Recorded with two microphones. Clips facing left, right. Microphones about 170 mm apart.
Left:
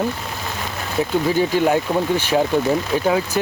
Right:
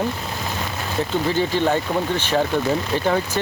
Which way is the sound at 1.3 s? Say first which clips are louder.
Left 2 dB; 10° left (ahead or behind).